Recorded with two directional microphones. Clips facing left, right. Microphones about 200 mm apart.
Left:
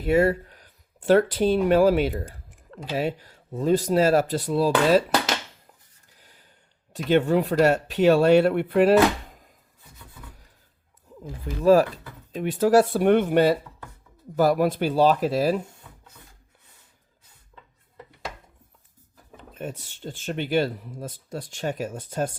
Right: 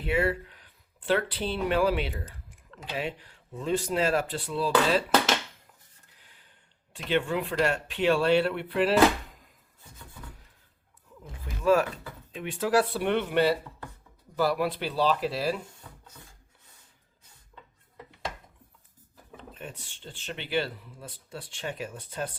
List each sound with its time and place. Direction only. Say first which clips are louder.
0.0 s speech: left 7 dB; 40° left (ahead or behind)
6.1 s gasp: left 7 dB; 40° left (ahead or behind)
6.9 s speech: left 7 dB; 40° left (ahead or behind)
11.2 s speech: left 8 dB; 35° left (ahead or behind)
19.5 s speech: left 11 dB; 40° left (ahead or behind)